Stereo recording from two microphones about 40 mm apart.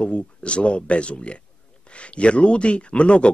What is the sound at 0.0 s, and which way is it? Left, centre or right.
A man's voice, left.